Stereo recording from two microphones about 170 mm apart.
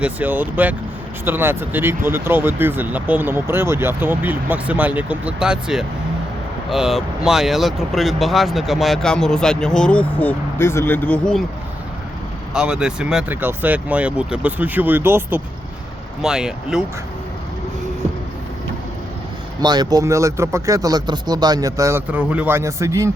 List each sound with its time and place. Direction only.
0.0 s speech: 10° right (ahead or behind); by 11.2 s 10° left (ahead or behind)
12.5 s speech: 5° right (ahead or behind)
19.6 s speech: 25° right (ahead or behind)